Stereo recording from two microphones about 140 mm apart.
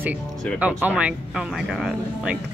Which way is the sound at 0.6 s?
10° right (ahead or behind).